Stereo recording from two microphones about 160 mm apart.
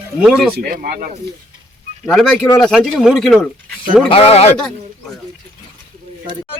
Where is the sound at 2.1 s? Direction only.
Centre (ahead or behind).